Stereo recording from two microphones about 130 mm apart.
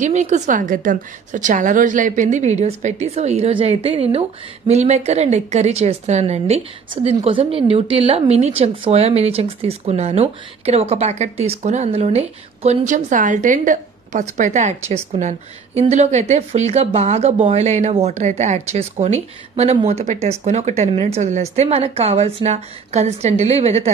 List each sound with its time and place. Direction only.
0.0 s a woman's voice: 65° right (ahead or behind)
7.2 s a woman's voice: 40° right (ahead or behind)